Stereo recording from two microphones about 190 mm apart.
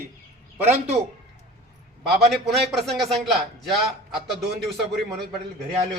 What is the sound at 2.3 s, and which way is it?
A man's voice, centre (ahead or behind).